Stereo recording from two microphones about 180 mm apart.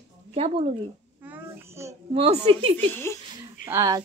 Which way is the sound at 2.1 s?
35° right (ahead or behind).